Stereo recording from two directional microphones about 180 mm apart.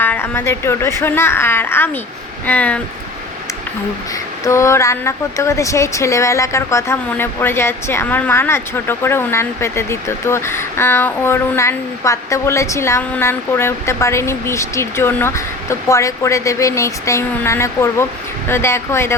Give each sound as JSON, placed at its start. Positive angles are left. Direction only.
{"t": 0.0, "sound": "speech", "side_deg": 10}
{"t": 4.4, "sound": "speech", "side_deg": 15}